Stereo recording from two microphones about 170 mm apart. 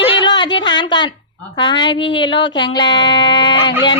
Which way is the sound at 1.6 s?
30° left (ahead or behind).